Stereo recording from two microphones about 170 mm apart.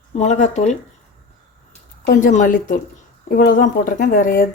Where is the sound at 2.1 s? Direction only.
50° left (ahead or behind).